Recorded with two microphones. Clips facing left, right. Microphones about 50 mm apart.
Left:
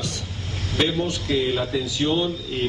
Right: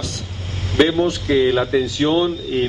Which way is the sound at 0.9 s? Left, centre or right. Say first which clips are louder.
Right 7 dB; right.